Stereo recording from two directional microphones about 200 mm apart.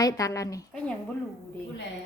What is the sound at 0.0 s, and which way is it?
Speech, 15° left (ahead or behind).